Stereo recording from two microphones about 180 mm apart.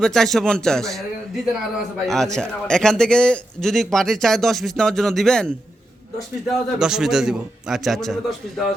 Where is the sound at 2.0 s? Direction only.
5° left (ahead or behind).